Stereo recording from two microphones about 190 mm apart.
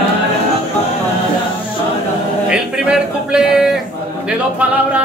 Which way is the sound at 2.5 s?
5° right (ahead or behind).